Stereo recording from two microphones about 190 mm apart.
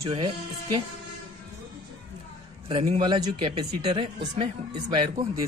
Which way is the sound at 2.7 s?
25° right (ahead or behind).